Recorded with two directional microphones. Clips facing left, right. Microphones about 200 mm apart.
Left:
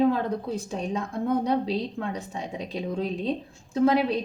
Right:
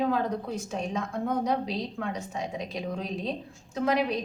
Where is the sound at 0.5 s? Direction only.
35° left (ahead or behind).